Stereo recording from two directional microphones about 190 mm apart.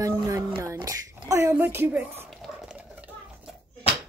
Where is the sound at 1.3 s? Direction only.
10° right (ahead or behind).